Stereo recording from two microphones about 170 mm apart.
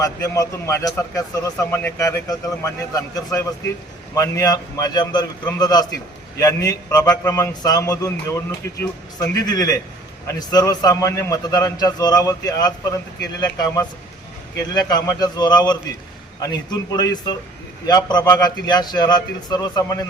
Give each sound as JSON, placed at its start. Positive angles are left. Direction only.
{"t": 0.0, "sound": "a man's voice", "side_deg": 20}